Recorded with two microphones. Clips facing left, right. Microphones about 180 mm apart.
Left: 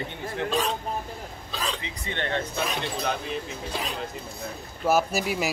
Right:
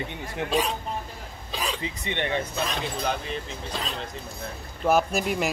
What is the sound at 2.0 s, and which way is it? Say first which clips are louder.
Speech: right 1 dB; 15° right (ahead or behind).